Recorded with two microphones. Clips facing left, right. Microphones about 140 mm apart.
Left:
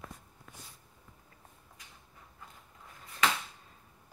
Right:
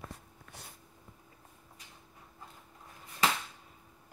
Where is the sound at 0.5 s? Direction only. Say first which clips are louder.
Right 3 dB; 70° right (ahead or behind).